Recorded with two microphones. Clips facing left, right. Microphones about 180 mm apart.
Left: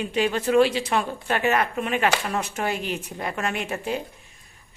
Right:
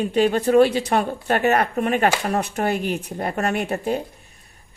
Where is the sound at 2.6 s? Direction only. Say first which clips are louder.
Right 5 dB; 60° right (ahead or behind).